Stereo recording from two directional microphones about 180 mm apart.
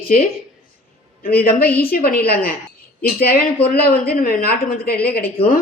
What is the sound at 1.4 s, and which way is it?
Speech, 60° left (ahead or behind).